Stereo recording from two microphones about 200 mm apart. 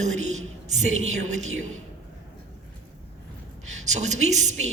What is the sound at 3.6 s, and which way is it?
Speech, 35° right (ahead or behind).